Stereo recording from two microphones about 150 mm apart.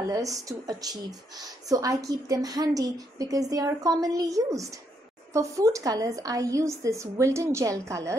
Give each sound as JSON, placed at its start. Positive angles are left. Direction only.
{"t": 0.1, "sound": "a woman's voice", "side_deg": -20}